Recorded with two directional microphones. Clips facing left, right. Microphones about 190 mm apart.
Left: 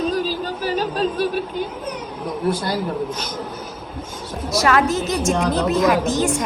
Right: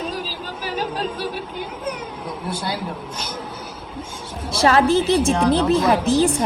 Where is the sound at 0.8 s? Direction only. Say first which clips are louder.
Left 4 dB; 10° right (ahead or behind).